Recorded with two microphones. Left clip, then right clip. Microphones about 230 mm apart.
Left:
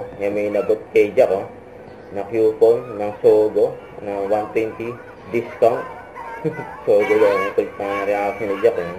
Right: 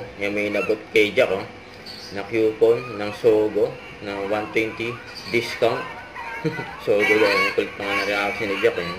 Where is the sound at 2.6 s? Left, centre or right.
Right.